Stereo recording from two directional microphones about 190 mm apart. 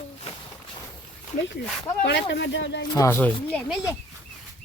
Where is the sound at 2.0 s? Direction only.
65° left (ahead or behind).